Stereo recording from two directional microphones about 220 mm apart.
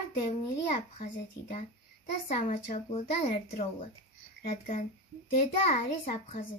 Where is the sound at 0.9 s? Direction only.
35° left (ahead or behind).